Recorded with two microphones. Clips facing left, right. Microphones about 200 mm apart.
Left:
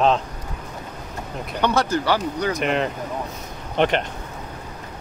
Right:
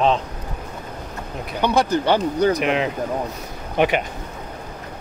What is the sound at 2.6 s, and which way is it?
A man's voice, centre (ahead or behind).